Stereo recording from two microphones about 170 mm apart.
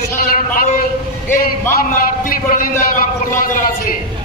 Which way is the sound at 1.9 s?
55° left (ahead or behind).